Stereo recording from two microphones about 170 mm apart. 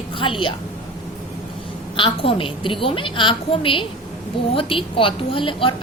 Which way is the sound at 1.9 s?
30° left (ahead or behind).